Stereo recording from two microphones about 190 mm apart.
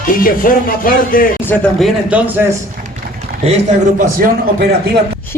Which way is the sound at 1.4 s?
5° left (ahead or behind).